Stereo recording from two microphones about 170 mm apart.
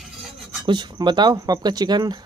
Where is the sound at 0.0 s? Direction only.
Centre (ahead or behind).